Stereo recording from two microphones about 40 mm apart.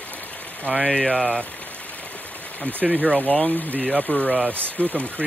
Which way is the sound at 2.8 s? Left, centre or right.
Centre.